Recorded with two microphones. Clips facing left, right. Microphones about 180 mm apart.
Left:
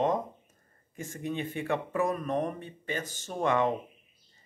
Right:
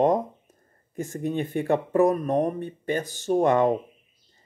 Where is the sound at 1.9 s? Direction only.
40° right (ahead or behind).